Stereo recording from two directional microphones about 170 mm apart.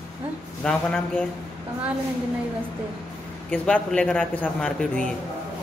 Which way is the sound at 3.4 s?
5° left (ahead or behind).